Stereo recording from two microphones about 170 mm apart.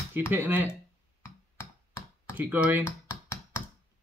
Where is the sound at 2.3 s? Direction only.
10° right (ahead or behind).